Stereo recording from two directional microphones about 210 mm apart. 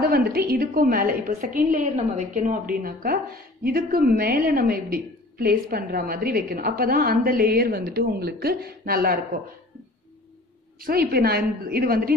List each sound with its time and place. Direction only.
0.0 s a woman's voice: 45° right (ahead or behind)
10.8 s a woman's voice: 45° right (ahead or behind)